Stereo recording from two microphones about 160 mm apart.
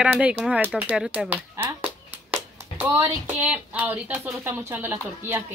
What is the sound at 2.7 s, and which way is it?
Speech, 15° right (ahead or behind).